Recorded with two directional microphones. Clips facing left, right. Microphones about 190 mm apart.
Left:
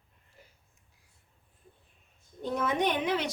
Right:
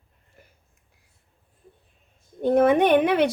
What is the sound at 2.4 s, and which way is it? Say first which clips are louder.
Speech: right 11 dB; 60° right (ahead or behind).